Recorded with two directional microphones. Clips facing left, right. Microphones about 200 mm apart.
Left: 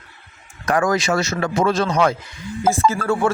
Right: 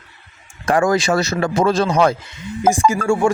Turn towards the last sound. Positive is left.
turn(degrees=-15)  # may be behind; listen again after turning